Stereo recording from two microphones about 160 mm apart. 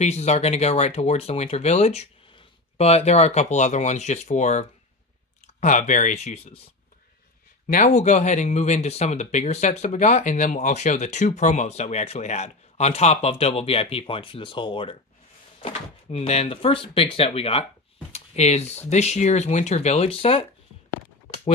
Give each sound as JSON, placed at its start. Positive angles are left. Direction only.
{"t": 0.0, "sound": "speech", "side_deg": 45}
{"t": 7.6, "sound": "speech", "side_deg": 50}